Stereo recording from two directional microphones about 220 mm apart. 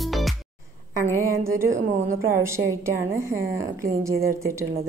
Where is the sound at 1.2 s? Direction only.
10° right (ahead or behind).